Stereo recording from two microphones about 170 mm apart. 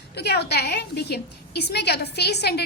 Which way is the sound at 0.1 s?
75° left (ahead or behind).